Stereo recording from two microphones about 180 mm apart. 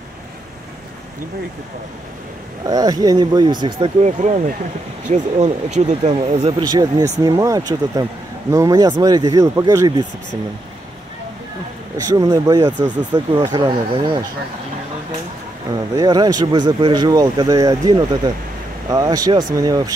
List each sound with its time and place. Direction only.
2.6 s speech: 20° right (ahead or behind)
4.0 s speech: 40° right (ahead or behind)
6.6 s speech: 20° right (ahead or behind)
12.1 s speech: 20° right (ahead or behind)
15.7 s speech: 20° right (ahead or behind)